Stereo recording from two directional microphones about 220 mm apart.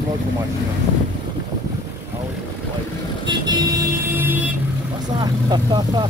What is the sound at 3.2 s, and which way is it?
Vehicle, 20° right (ahead or behind).